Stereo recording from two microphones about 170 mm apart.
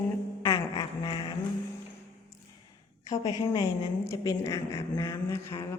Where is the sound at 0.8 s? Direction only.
30° left (ahead or behind).